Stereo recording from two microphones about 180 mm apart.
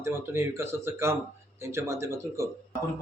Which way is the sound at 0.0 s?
15° right (ahead or behind).